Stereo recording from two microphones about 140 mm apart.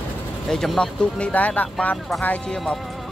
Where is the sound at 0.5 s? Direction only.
5° left (ahead or behind).